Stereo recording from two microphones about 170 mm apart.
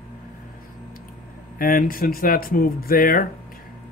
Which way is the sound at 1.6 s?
60° left (ahead or behind).